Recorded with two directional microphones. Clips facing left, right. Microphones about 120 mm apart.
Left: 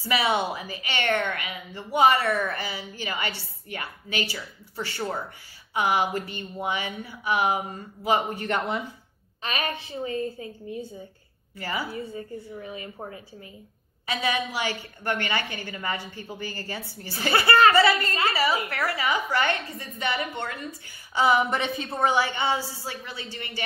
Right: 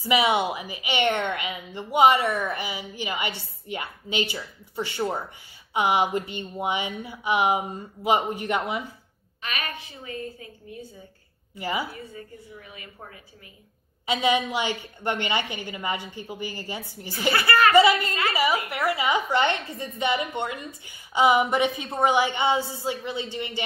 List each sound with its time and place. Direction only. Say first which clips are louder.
0.1 s a woman's voice: right 3 dB; 15° right (ahead or behind)
9.4 s a woman's voice: left 3 dB; 30° left (ahead or behind)
11.5 s a woman's voice: right 3 dB; 15° right (ahead or behind)
11.9 s a woman's voice: left 6 dB; 30° left (ahead or behind)
14.0 s a woman's voice: right 4 dB; 20° right (ahead or behind)
17.3 s speech: left 2 dB; 25° left (ahead or behind)
17.7 s a woman's voice: right 3 dB; 15° right (ahead or behind)